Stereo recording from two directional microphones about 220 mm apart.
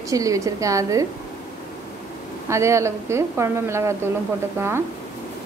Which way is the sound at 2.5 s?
15° right (ahead or behind).